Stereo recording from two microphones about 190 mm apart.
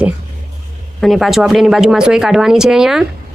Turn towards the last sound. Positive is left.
turn(degrees=-5)  # may be behind; listen again after turning